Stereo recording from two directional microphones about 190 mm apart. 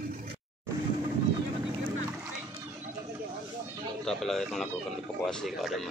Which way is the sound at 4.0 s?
Centre (ahead or behind).